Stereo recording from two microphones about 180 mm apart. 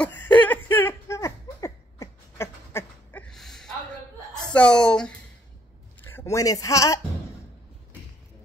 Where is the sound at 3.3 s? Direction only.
Centre (ahead or behind).